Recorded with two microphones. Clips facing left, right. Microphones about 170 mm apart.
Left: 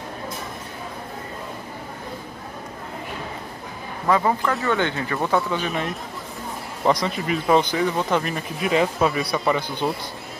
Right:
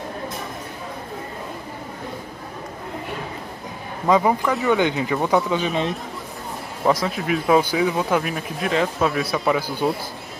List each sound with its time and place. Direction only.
4.1 s speech: 15° right (ahead or behind)
6.8 s speech: 5° right (ahead or behind)